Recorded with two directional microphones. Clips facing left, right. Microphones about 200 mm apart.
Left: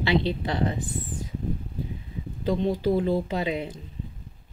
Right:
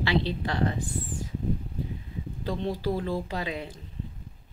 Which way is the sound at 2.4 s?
20° left (ahead or behind).